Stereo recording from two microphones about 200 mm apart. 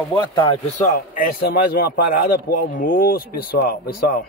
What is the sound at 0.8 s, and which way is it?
A man's voice, 40° left (ahead or behind).